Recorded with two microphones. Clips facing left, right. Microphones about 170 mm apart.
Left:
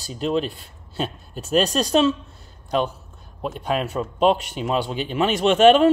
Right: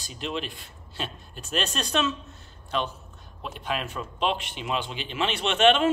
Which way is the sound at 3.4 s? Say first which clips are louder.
Left 7 dB; 40° left (ahead or behind).